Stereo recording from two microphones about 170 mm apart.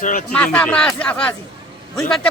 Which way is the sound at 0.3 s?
5° left (ahead or behind).